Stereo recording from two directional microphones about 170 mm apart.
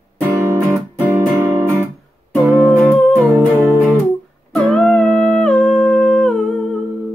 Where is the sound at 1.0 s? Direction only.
10° right (ahead or behind).